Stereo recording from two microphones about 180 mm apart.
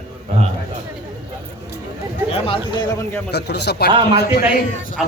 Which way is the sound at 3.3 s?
65° left (ahead or behind).